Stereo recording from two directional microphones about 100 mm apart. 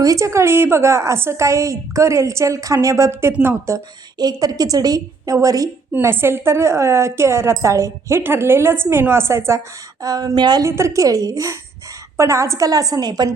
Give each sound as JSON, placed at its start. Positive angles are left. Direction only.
{"t": 0.0, "sound": "a woman's voice", "side_deg": -35}
{"t": 4.2, "sound": "a woman's voice", "side_deg": -40}
{"t": 5.9, "sound": "a woman's voice", "side_deg": -25}
{"t": 10.0, "sound": "speech", "side_deg": -40}
{"t": 10.6, "sound": "a woman's voice", "side_deg": -30}